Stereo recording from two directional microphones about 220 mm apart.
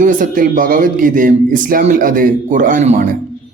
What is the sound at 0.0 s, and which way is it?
Speech, 35° right (ahead or behind).